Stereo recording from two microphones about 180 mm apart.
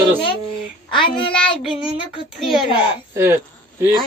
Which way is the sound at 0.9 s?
30° left (ahead or behind).